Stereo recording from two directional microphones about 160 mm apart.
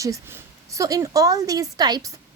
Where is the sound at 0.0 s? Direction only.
15° right (ahead or behind).